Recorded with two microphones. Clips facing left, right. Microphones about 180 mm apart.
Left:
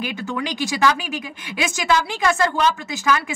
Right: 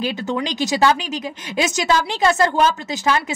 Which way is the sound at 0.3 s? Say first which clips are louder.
Right 3 dB; 25° right (ahead or behind).